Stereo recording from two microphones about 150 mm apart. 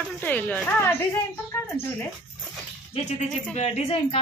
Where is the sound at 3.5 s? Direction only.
45° left (ahead or behind).